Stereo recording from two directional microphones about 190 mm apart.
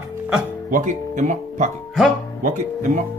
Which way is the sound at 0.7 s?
40° right (ahead or behind).